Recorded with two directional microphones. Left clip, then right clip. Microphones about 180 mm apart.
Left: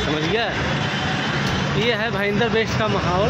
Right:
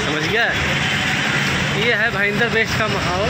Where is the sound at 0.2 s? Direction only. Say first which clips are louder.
Right 6 dB; 15° left (ahead or behind).